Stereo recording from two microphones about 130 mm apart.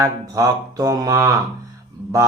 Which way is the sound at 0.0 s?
25° right (ahead or behind).